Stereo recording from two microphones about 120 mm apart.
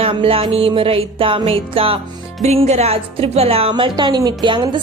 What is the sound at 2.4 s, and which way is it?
A woman's voice, 65° right (ahead or behind).